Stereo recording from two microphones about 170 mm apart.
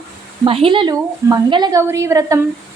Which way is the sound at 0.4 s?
30° right (ahead or behind).